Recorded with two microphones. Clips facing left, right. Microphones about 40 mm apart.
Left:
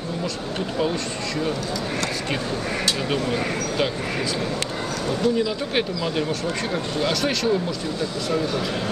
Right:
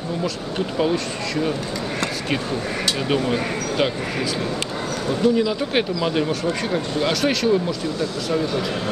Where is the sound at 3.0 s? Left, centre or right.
Centre.